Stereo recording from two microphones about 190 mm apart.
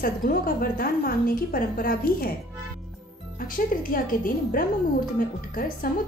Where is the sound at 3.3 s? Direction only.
45° left (ahead or behind).